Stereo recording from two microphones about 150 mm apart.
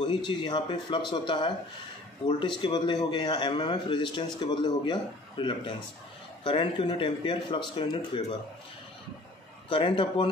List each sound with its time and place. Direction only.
0.0 s a man's voice: 30° left (ahead or behind)
9.7 s a man's voice: 35° left (ahead or behind)